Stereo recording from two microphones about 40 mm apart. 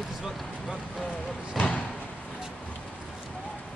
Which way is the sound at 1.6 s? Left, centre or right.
Left.